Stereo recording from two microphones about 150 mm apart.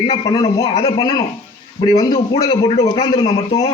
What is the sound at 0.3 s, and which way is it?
A man's voice, 30° left (ahead or behind).